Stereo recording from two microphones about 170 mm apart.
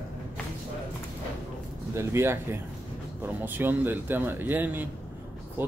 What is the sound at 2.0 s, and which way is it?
A man's voice, 15° right (ahead or behind).